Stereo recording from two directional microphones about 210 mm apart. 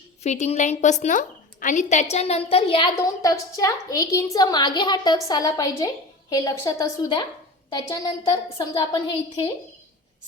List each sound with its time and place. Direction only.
0.2 s a woman's voice: 30° left (ahead or behind)